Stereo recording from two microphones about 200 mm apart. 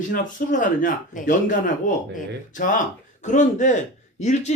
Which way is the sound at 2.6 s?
45° left (ahead or behind).